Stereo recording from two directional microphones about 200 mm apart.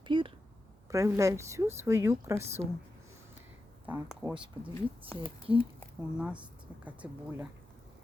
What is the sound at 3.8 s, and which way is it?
Speech, 5° right (ahead or behind).